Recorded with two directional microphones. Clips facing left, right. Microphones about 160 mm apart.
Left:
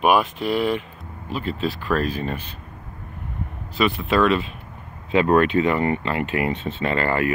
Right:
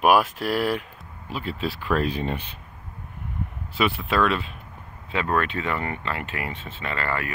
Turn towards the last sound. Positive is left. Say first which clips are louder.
# left 7 dB
turn(degrees=25)  # may be behind; listen again after turning